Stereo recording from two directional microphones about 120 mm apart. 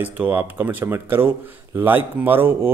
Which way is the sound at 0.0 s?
15° right (ahead or behind).